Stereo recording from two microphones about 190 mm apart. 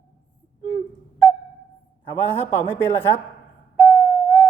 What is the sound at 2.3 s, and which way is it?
Speech, 10° left (ahead or behind).